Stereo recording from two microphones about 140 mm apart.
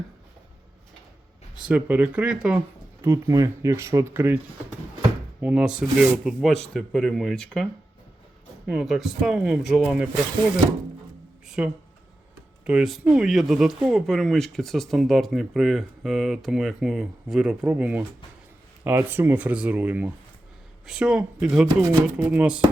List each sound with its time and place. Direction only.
1.5 s speech: 10° right (ahead or behind)
3.0 s speech: 20° right (ahead or behind)
5.4 s speech: 10° right (ahead or behind)
11.4 s music: 5° right (ahead or behind)
12.6 s speech: 5° right (ahead or behind)
21.8 s speech: 20° right (ahead or behind)
22.3 s speech: 10° right (ahead or behind)